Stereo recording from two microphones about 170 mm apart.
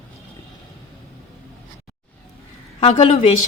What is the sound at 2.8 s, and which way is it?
Speech, 40° left (ahead or behind).